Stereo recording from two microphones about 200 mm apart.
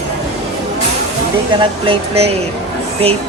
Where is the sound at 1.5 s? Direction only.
25° right (ahead or behind).